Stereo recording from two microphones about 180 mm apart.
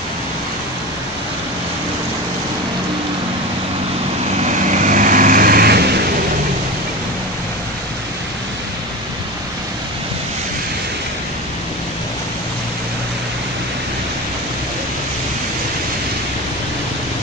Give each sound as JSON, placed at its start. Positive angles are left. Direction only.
{"t": 4.5, "sound": "vehicle", "side_deg": -40}